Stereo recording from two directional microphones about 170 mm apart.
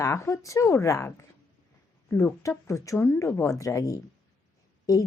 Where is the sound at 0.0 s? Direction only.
15° left (ahead or behind).